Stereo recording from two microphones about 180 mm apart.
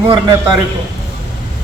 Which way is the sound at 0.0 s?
20° right (ahead or behind).